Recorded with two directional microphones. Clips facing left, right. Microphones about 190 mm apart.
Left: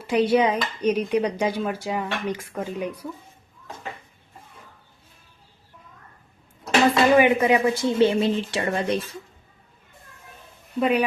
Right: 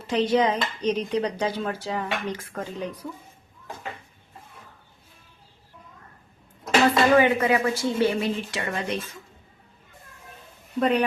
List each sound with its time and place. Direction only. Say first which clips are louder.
0.0 s speech: left 2 dB; 10° left (ahead or behind)
6.8 s speech: left 2 dB; 15° left (ahead or behind); by 9.0 s 35° left (ahead or behind)
10.8 s speech: left 1 dB; 5° left (ahead or behind)